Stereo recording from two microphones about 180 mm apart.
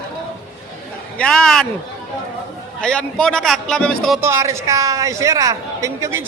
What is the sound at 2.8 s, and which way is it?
A man's voice, 5° left (ahead or behind).